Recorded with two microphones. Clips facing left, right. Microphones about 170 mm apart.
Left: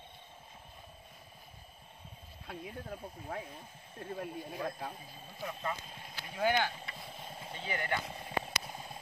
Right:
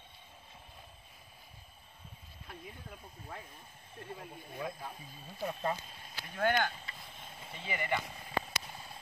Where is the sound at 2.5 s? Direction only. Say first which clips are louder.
Left 6 dB; 65° left (ahead or behind).